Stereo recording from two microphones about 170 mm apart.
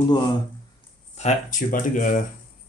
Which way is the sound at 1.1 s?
45° left (ahead or behind).